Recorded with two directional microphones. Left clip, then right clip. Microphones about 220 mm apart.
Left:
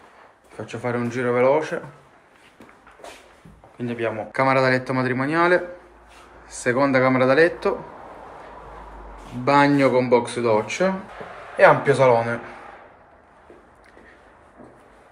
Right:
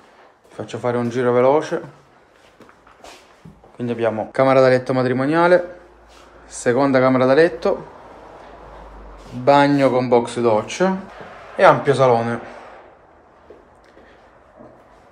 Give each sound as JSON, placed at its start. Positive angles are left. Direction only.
{"t": 0.6, "sound": "speech", "side_deg": -5}
{"t": 3.7, "sound": "speech", "side_deg": -10}
{"t": 9.4, "sound": "a man's voice", "side_deg": 0}